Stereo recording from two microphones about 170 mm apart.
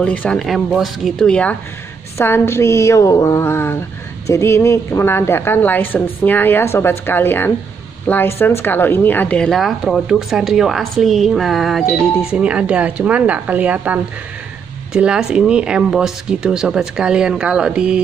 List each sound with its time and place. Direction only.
0.0 s a woman's voice: 5° left (ahead or behind)